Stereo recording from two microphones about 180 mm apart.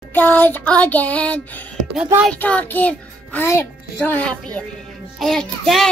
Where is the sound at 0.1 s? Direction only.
10° left (ahead or behind).